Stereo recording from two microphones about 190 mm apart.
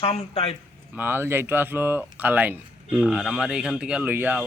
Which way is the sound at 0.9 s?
10° right (ahead or behind).